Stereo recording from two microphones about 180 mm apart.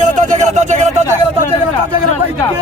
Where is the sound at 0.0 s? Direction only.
45° right (ahead or behind).